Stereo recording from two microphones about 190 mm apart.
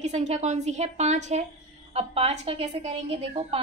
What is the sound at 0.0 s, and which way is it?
A woman's voice, 35° right (ahead or behind).